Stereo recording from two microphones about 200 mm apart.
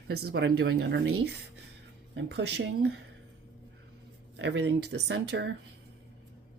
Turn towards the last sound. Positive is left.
turn(degrees=-60)  # may be behind; listen again after turning